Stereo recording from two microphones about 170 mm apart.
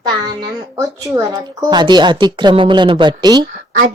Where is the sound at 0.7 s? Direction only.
20° right (ahead or behind).